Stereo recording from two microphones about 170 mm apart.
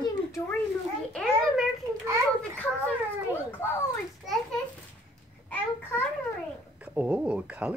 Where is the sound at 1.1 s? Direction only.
5° left (ahead or behind).